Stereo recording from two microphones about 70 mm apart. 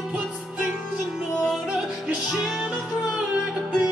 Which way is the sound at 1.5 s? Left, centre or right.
Centre.